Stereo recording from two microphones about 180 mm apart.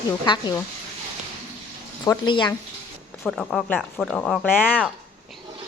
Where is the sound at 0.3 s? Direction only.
25° left (ahead or behind).